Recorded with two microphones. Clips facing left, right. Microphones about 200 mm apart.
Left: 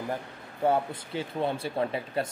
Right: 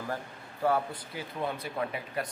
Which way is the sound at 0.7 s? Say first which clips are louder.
Left 3 dB; 25° left (ahead or behind).